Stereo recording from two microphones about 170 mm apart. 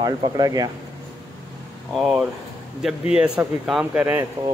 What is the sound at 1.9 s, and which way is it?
Speech, 5° right (ahead or behind).